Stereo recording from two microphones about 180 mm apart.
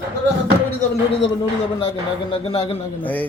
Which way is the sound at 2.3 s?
30° left (ahead or behind).